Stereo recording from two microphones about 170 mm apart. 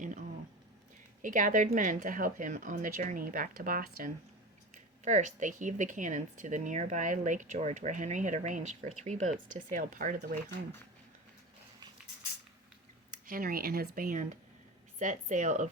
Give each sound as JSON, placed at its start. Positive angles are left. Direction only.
{"t": 1.2, "sound": "speech", "side_deg": -50}
{"t": 5.0, "sound": "speech", "side_deg": -45}
{"t": 13.1, "sound": "speech", "side_deg": -55}